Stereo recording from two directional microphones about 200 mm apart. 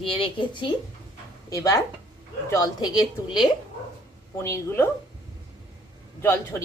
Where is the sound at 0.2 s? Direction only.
25° left (ahead or behind).